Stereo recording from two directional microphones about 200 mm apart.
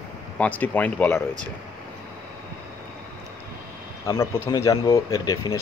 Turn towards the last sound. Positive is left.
turn(degrees=15)  # may be behind; listen again after turning